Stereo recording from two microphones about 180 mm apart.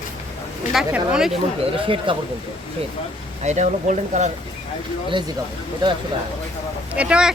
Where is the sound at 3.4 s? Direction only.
40° right (ahead or behind).